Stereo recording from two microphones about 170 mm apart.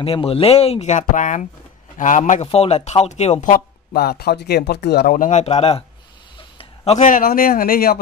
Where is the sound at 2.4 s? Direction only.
35° left (ahead or behind).